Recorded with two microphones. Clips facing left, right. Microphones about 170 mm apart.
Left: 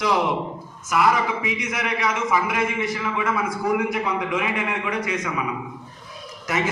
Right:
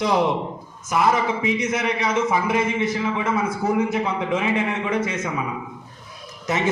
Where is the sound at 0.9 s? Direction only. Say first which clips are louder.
Right 1 dB; 25° right (ahead or behind).